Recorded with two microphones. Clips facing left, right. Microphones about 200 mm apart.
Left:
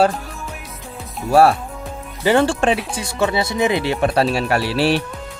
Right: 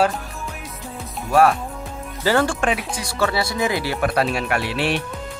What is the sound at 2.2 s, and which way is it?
Speech, 20° left (ahead or behind).